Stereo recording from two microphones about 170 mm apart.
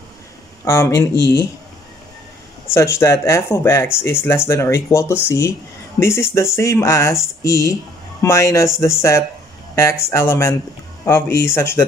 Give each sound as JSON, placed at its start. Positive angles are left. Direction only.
{"t": 0.7, "sound": "speech", "side_deg": 15}
{"t": 2.7, "sound": "speech", "side_deg": 15}